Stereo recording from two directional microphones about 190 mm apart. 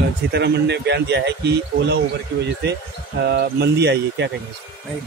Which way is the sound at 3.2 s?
60° right (ahead or behind).